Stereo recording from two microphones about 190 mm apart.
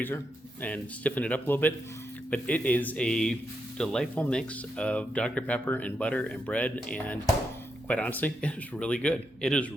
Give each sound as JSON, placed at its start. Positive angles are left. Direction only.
{"t": 0.6, "sound": "speech", "side_deg": 10}